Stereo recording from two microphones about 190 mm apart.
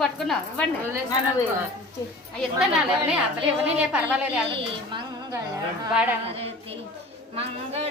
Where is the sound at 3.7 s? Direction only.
5° right (ahead or behind).